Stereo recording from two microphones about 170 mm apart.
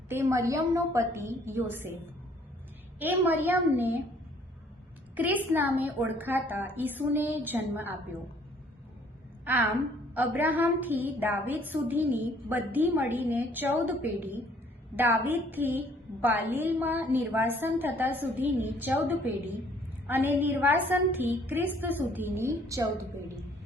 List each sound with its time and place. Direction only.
0.1 s a woman's voice: 15° right (ahead or behind)
3.0 s a woman's voice: 10° right (ahead or behind)
5.1 s a woman's voice: 10° right (ahead or behind)
9.4 s a woman's voice: 10° right (ahead or behind)